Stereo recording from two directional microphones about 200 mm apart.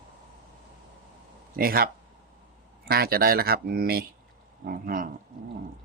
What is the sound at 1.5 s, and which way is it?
Speech, 45° right (ahead or behind).